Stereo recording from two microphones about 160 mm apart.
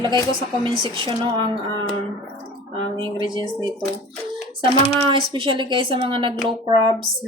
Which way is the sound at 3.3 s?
25° right (ahead or behind).